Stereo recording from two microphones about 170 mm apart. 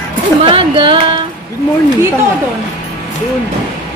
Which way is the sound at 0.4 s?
30° right (ahead or behind).